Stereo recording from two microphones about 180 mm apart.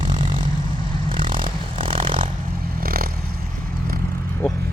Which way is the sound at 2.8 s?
55° right (ahead or behind).